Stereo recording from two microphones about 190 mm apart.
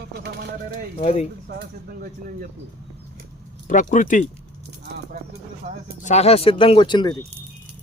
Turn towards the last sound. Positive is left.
turn(degrees=25)  # may be behind; listen again after turning